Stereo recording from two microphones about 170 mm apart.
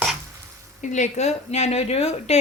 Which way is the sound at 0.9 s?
45° left (ahead or behind).